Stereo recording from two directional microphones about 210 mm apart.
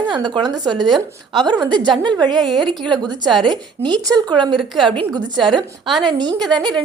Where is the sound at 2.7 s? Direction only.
20° right (ahead or behind).